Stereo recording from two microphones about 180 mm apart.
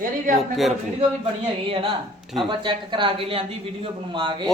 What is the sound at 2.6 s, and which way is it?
Speech, 25° right (ahead or behind).